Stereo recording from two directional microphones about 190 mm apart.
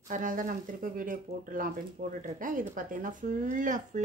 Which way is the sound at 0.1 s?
45° right (ahead or behind).